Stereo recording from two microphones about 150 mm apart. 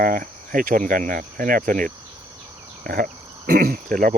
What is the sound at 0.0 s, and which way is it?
Speech, 70° right (ahead or behind).